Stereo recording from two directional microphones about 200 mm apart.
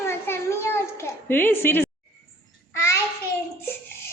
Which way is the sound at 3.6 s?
10° left (ahead or behind).